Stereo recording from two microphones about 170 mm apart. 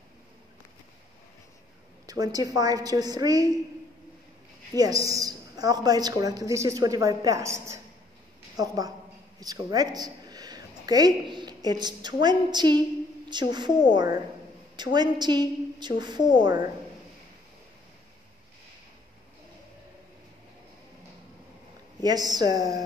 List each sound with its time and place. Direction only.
2.0 s a woman's voice: 20° right (ahead or behind)
4.7 s a woman's voice: 20° right (ahead or behind)
15.0 s a woman's voice: 25° right (ahead or behind)
22.0 s a woman's voice: 25° right (ahead or behind)